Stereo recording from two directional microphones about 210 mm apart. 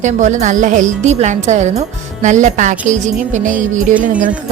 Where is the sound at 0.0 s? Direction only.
35° right (ahead or behind).